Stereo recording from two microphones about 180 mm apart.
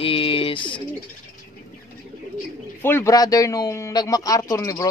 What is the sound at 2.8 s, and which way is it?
Speech, 15° left (ahead or behind).